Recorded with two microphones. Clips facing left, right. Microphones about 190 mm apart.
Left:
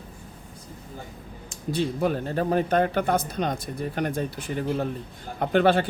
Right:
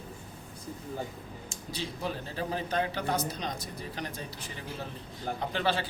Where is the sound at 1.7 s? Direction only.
55° left (ahead or behind).